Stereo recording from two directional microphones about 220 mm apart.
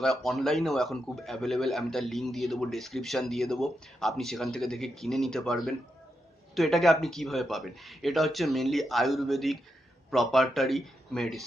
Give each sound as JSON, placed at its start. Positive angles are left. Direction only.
{"t": 0.0, "sound": "a man's voice", "side_deg": 0}